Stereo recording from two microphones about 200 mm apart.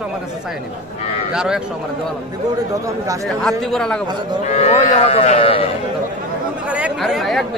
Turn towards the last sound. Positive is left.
turn(degrees=0)  # may be behind; listen again after turning